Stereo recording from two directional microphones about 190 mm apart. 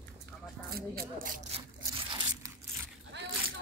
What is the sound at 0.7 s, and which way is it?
Speech, 50° right (ahead or behind).